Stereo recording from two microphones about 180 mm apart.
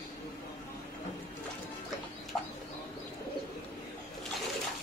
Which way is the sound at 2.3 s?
Centre (ahead or behind).